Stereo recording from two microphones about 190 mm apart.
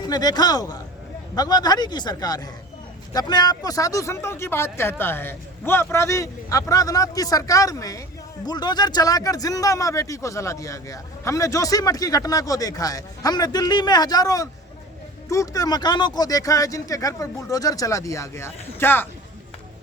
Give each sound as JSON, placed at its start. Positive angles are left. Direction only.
{"t": 0.0, "sound": "speech", "side_deg": 20}